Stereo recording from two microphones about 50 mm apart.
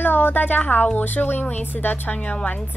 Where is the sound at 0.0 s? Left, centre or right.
Left.